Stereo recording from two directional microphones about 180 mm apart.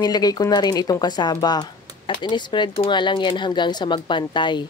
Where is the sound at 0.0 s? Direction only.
20° left (ahead or behind).